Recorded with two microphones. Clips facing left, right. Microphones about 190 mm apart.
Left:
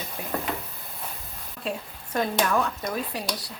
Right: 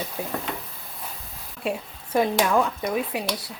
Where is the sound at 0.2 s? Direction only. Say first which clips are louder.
Right 5 dB; 25° right (ahead or behind).